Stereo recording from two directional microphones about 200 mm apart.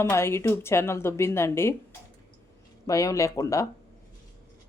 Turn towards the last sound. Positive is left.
turn(degrees=15)  # may be behind; listen again after turning